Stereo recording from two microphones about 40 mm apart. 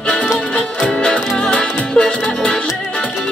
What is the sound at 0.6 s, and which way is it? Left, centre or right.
Music, left.